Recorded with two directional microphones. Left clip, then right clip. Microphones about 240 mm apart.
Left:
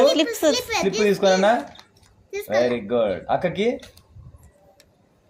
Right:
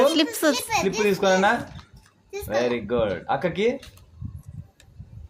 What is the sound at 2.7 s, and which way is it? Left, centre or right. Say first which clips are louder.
Speech: left 2 dB; right.